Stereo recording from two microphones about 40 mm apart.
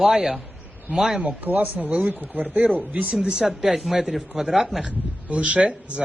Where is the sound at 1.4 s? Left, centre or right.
Right.